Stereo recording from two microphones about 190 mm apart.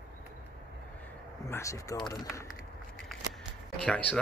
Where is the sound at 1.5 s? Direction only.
15° left (ahead or behind).